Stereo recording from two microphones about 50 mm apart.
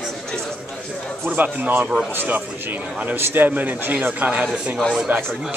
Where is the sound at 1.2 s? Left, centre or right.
Right.